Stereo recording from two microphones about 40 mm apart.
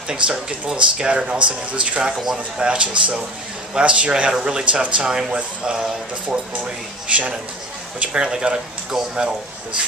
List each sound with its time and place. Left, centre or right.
0.1 s speech: right